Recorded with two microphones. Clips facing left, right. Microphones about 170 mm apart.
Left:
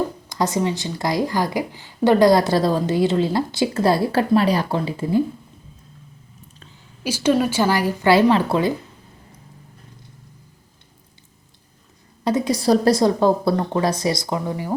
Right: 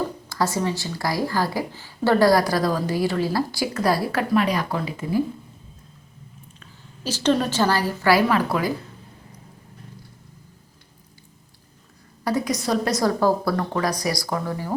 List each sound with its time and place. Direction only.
0.3 s speech: 20° left (ahead or behind)
7.0 s speech: 10° left (ahead or behind); by 8.7 s 25° left (ahead or behind)
12.2 s speech: 25° left (ahead or behind)